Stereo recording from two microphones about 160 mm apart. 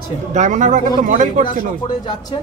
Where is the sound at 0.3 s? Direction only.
50° right (ahead or behind).